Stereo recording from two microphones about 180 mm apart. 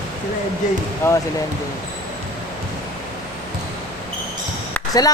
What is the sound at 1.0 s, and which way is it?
Speech, 15° left (ahead or behind).